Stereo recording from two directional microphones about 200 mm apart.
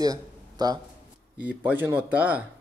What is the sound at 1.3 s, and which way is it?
A woman's voice, 5° right (ahead or behind).